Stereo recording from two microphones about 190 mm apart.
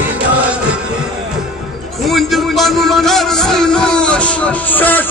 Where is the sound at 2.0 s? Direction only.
Centre (ahead or behind).